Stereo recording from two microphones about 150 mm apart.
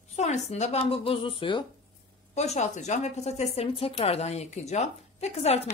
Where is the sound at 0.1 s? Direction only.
50° left (ahead or behind).